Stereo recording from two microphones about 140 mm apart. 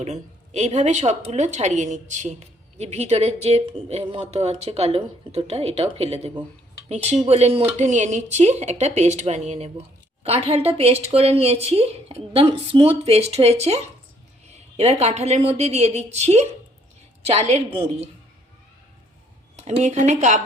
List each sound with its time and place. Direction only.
0.0 s a woman's voice: 50° right (ahead or behind)
14.8 s a woman's voice: 50° right (ahead or behind)
19.5 s a woman's voice: 55° right (ahead or behind)